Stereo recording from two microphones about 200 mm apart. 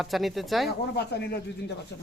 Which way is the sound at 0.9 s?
55° left (ahead or behind).